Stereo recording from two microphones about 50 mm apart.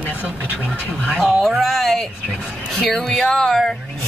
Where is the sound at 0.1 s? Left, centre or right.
Right.